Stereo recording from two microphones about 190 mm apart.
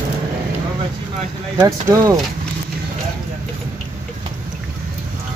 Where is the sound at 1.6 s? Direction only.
15° right (ahead or behind).